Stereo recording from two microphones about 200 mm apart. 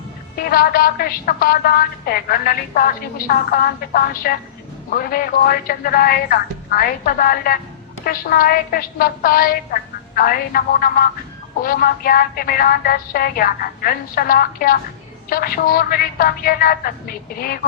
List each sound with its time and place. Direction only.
0.3 s a woman's voice: 45° left (ahead or behind)